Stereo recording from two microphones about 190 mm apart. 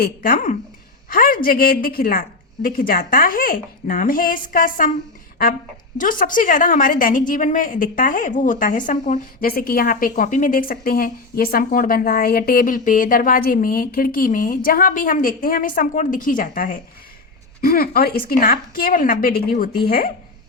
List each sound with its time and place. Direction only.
0.0 s a woman's voice: 50° left (ahead or behind)